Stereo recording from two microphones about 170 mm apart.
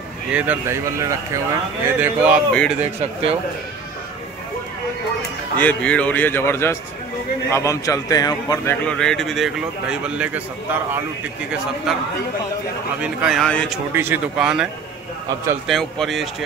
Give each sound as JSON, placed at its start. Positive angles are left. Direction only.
{"t": 0.3, "sound": "speech", "side_deg": -10}
{"t": 2.5, "sound": "a man's voice", "side_deg": 5}
{"t": 5.6, "sound": "a man's voice", "side_deg": 10}
{"t": 8.8, "sound": "a man's voice", "side_deg": 5}
{"t": 13.0, "sound": "a man's voice", "side_deg": -5}
{"t": 13.9, "sound": "a man's voice", "side_deg": -10}